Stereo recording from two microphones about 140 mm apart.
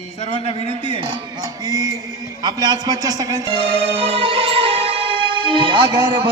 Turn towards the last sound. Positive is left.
turn(degrees=-35)  # may be behind; listen again after turning